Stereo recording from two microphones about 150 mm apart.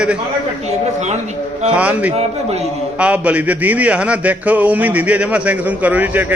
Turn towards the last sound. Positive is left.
turn(degrees=-10)  # may be behind; listen again after turning